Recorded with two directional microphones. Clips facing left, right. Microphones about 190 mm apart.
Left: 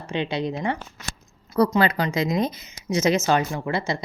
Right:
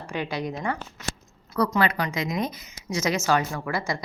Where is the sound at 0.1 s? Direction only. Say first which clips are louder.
Left 4 dB; 25° left (ahead or behind).